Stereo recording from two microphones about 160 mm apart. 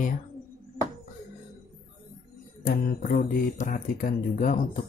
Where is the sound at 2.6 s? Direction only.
70° left (ahead or behind).